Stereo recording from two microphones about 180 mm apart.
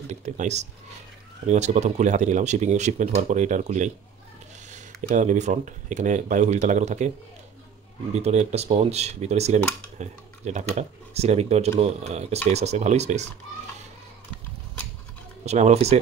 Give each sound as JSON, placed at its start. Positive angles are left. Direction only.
{"t": 0.2, "sound": "speech", "side_deg": -40}
{"t": 8.1, "sound": "speech", "side_deg": -35}
{"t": 15.4, "sound": "speech", "side_deg": -40}